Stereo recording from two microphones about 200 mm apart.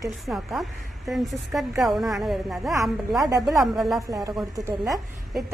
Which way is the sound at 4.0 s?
15° right (ahead or behind).